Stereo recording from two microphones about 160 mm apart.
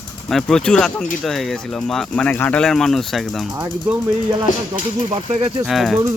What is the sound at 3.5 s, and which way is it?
Speech, 15° right (ahead or behind).